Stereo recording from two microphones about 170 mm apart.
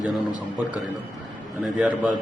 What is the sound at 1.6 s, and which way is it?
Speech, 5° right (ahead or behind).